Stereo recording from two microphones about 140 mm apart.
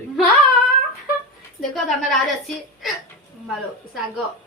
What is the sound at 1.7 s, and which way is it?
Speech, centre (ahead or behind).